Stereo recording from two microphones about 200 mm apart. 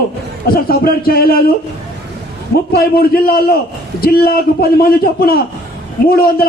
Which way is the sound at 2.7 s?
50° left (ahead or behind).